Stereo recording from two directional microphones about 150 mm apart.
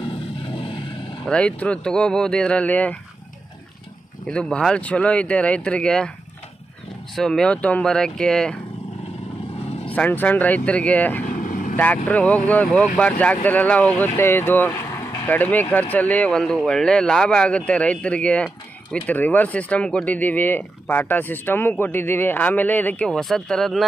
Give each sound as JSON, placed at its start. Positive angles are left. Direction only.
{"t": 0.0, "sound": "vehicle", "side_deg": 35}
{"t": 1.2, "sound": "speech", "side_deg": 10}
{"t": 4.3, "sound": "speech", "side_deg": 5}
{"t": 7.2, "sound": "speech", "side_deg": 5}
{"t": 9.8, "sound": "speech", "side_deg": 10}
{"t": 11.2, "sound": "vehicle", "side_deg": 60}
{"t": 11.7, "sound": "speech", "side_deg": 10}